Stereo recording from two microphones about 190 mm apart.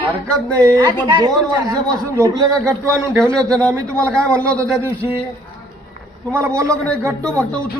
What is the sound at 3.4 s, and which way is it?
Speech, 5° left (ahead or behind).